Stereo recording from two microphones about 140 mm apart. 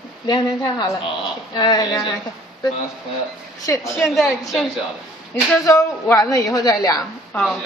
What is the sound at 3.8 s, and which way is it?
A woman's voice, centre (ahead or behind).